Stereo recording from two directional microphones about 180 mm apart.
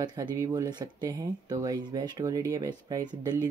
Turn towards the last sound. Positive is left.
turn(degrees=-20)  # may be behind; listen again after turning